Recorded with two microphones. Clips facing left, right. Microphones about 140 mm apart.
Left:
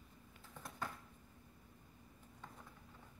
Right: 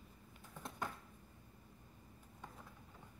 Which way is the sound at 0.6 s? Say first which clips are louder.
Right 2 dB; 25° right (ahead or behind).